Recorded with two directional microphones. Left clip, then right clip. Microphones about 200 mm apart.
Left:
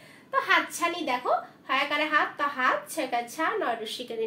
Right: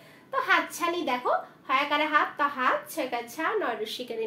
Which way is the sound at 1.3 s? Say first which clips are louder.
Right 1 dB; 20° right (ahead or behind).